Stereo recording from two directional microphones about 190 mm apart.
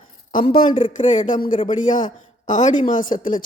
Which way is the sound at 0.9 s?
40° left (ahead or behind).